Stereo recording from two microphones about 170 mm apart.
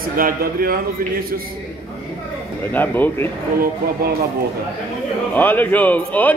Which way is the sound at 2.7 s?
10° left (ahead or behind).